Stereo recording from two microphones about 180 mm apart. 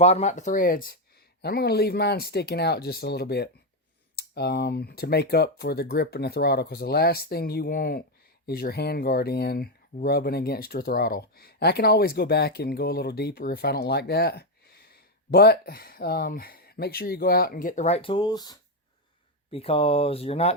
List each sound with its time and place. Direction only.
0.0 s speech: 35° left (ahead or behind)
1.4 s speech: 60° left (ahead or behind); by 20.6 s 35° left (ahead or behind)